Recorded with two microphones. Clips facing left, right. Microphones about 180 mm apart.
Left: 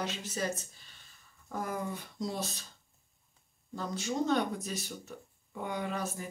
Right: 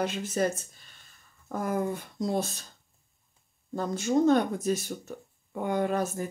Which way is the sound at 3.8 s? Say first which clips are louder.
Right 8 dB; 50° right (ahead or behind).